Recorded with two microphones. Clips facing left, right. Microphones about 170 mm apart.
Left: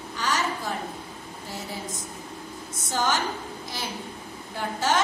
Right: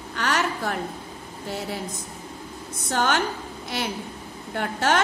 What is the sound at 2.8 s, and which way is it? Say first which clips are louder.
A woman's voice: right 3 dB; 60° right (ahead or behind).